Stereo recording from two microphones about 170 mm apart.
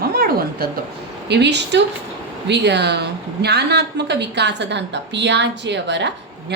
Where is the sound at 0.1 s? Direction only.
60° right (ahead or behind).